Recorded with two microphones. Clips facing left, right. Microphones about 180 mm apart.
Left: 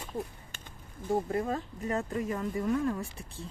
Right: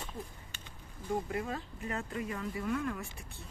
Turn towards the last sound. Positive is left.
turn(degrees=30)  # may be behind; listen again after turning